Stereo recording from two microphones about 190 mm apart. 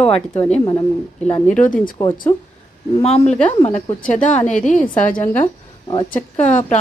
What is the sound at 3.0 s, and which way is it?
Speech, 35° left (ahead or behind).